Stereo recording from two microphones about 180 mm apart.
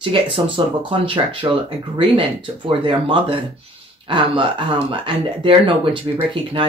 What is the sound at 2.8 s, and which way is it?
Speech, 30° right (ahead or behind).